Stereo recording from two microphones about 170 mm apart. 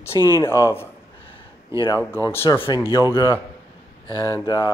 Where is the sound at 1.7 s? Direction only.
15° right (ahead or behind).